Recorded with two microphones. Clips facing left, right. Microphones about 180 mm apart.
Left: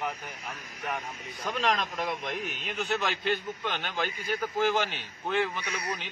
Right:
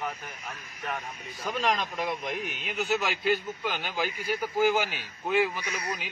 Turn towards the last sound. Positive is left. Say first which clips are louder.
# even
turn(degrees=-10)  # may be behind; listen again after turning